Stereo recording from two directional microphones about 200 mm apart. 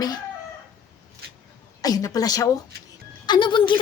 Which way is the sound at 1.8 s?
20° left (ahead or behind).